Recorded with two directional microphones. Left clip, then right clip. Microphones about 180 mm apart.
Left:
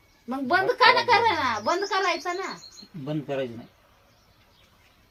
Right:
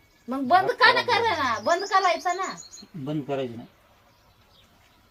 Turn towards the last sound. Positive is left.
turn(degrees=-20)  # may be behind; listen again after turning